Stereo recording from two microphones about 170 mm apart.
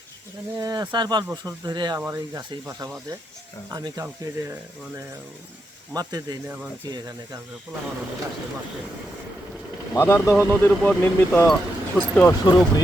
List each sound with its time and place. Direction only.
0.6 s speech: 25° right (ahead or behind)
5.9 s speech: 20° right (ahead or behind)
9.9 s speech: 15° left (ahead or behind)
10.3 s speech: 10° right (ahead or behind)
10.6 s speech: 10° left (ahead or behind)
12.5 s speech: 20° left (ahead or behind)